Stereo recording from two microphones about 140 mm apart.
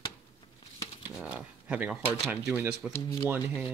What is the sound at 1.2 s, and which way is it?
Speech, 10° right (ahead or behind).